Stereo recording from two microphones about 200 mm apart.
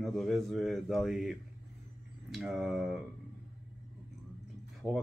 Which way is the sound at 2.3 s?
Centre (ahead or behind).